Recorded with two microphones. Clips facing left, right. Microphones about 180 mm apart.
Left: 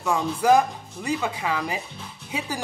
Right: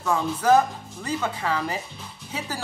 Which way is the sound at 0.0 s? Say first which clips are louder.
Left 1 dB; 10° left (ahead or behind).